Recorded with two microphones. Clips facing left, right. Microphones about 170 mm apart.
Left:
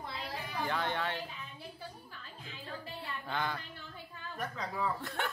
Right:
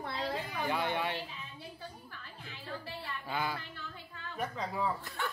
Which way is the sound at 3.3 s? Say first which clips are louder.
Right 1 dB; 5° right (ahead or behind).